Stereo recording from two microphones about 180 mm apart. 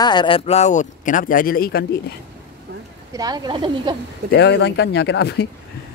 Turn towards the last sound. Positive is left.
turn(degrees=70)  # may be behind; listen again after turning